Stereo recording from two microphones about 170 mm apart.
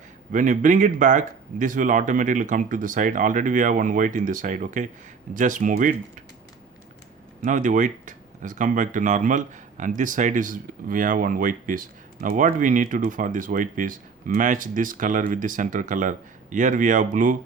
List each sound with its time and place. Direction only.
0.3 s speech: 50° right (ahead or behind)
7.4 s speech: 50° right (ahead or behind)